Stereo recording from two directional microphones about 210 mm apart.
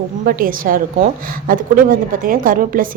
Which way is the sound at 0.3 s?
40° right (ahead or behind).